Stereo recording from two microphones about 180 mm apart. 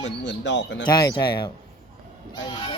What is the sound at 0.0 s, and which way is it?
Speech, 80° left.